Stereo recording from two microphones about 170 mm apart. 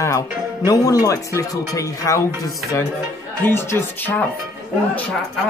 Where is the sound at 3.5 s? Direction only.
15° left (ahead or behind).